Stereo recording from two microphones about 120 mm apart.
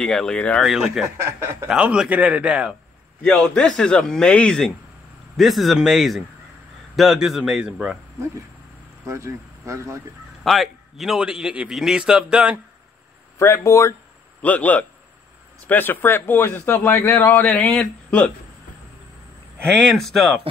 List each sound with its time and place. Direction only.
0.0 s speech: 5° left (ahead or behind)
0.7 s a man's voice: 5° right (ahead or behind)
1.0 s speech: 20° right (ahead or behind)
1.7 s a man's voice: 10° right (ahead or behind)
3.2 s a man's voice: 10° left (ahead or behind); by 8.0 s 5° right (ahead or behind)
9.0 s speech: 25° right (ahead or behind)
10.4 s a man's voice: centre (ahead or behind)
13.4 s speech: 25° left (ahead or behind)
14.4 s speech: 10° left (ahead or behind)
19.6 s a man's voice: 5° left (ahead or behind)